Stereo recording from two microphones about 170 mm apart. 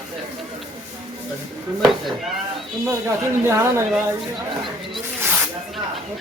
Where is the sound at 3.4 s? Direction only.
15° right (ahead or behind).